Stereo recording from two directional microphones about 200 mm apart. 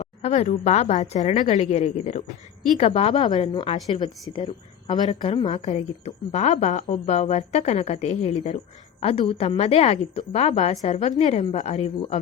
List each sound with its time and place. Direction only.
0.0 s a woman's voice: 30° left (ahead or behind)